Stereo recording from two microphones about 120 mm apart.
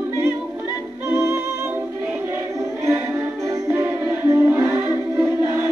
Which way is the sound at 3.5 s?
20° right (ahead or behind).